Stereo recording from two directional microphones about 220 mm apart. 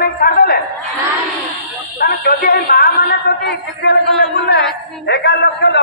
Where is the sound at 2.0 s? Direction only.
40° left (ahead or behind).